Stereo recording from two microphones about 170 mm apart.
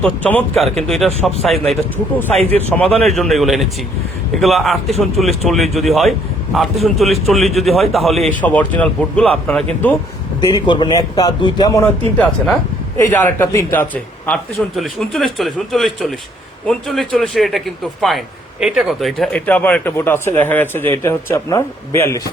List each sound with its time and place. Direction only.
0.0 s a man's voice: 10° left (ahead or behind)
2.3 s speech: 35° right (ahead or behind)
2.6 s a man's voice: 10° left (ahead or behind)
10.5 s a man's voice: 25° left (ahead or behind); by 17.6 s centre (ahead or behind)
18.6 s speech: centre (ahead or behind); by 22.2 s 15° left (ahead or behind)